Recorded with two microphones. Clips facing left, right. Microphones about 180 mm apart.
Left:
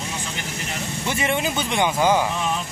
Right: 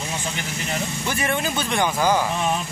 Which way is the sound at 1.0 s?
20° left (ahead or behind).